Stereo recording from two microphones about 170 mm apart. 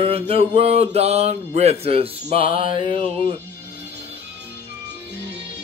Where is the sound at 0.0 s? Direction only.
35° right (ahead or behind).